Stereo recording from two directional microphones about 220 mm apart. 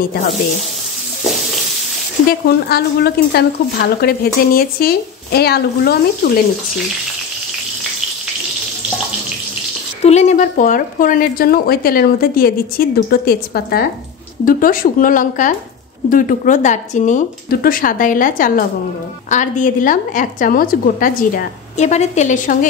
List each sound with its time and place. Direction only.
2.4 s speech: 45° left (ahead or behind)
10.0 s a woman's voice: 30° left (ahead or behind)